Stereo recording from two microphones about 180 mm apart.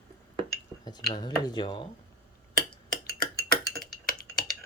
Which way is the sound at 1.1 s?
25° left (ahead or behind).